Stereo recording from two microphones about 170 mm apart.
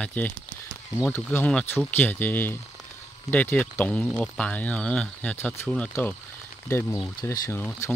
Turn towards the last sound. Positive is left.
turn(degrees=10)  # may be behind; listen again after turning